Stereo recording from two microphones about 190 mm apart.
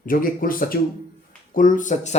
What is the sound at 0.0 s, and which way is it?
Speech, 45° left (ahead or behind).